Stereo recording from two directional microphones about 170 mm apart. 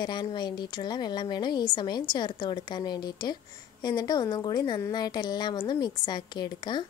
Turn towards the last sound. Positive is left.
turn(degrees=25)  # may be behind; listen again after turning